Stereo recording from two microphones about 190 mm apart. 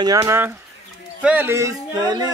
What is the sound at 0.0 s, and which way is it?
Speech, 20° right (ahead or behind).